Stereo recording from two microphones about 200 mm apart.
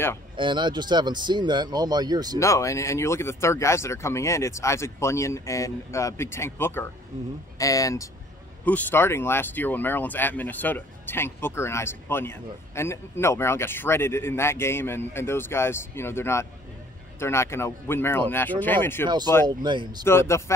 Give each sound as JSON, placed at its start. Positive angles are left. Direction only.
{"t": 0.4, "sound": "speech", "side_deg": -25}
{"t": 2.3, "sound": "speech", "side_deg": 15}
{"t": 19.0, "sound": "speech", "side_deg": -20}
{"t": 20.1, "sound": "speech", "side_deg": 15}